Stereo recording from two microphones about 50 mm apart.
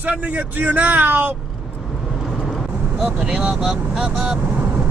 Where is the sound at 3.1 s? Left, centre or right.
Right.